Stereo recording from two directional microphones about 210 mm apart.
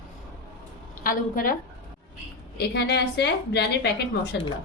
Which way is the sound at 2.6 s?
55° left (ahead or behind).